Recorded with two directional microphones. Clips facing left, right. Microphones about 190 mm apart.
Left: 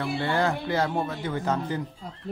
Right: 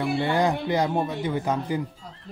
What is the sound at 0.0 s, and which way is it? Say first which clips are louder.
Speech: right 3 dB; 15° right (ahead or behind).